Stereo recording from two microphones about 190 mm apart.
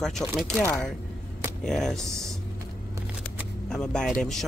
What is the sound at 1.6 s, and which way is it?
Speech, centre (ahead or behind).